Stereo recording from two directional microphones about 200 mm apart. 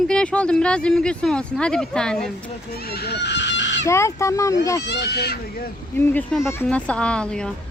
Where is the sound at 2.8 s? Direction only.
50° left (ahead or behind).